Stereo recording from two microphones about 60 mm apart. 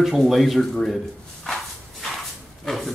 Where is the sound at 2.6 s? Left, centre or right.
Centre.